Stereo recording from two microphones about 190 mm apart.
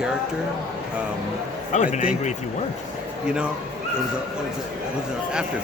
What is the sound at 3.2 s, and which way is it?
Speech, 5° right (ahead or behind).